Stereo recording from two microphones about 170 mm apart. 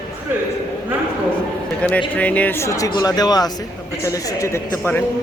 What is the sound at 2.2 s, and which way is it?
A man's voice, 10° left (ahead or behind).